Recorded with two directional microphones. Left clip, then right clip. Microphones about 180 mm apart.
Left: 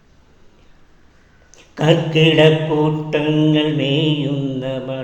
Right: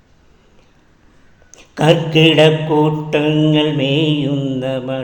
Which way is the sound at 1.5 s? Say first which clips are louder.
Right 3 dB; 25° right (ahead or behind).